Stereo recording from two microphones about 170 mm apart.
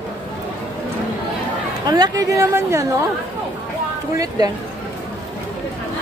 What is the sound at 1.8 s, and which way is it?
A woman's voice, 25° right (ahead or behind).